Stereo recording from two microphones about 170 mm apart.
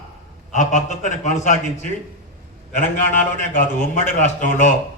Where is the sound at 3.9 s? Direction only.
45° left (ahead or behind).